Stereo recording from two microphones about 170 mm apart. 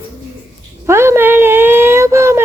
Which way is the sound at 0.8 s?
15° right (ahead or behind).